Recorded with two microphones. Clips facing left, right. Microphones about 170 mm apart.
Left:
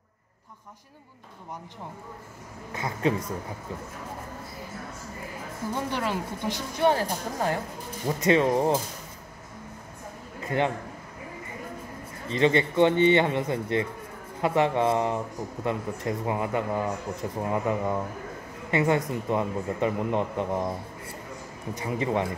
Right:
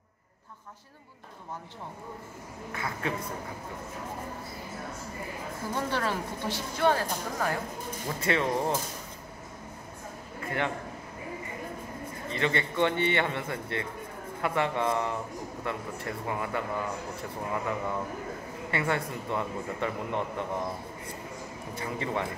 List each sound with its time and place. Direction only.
2.7 s speech: 25° left (ahead or behind)
5.8 s speech: 15° left (ahead or behind)
12.3 s speech: 20° left (ahead or behind)
21.8 s speech: 20° left (ahead or behind)